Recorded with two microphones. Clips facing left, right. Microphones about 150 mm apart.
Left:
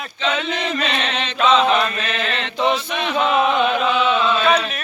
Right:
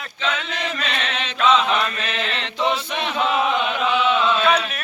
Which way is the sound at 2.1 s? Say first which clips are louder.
Left 3 dB; 25° right (ahead or behind).